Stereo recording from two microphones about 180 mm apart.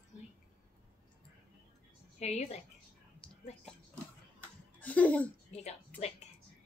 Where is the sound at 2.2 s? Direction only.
35° left (ahead or behind).